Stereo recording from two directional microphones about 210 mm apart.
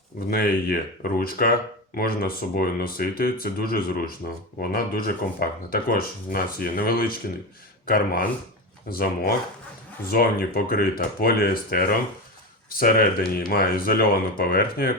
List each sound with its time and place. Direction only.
0.3 s speech: 45° left (ahead or behind)